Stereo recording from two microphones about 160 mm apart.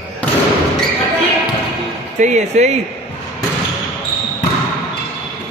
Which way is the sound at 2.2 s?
50° right (ahead or behind).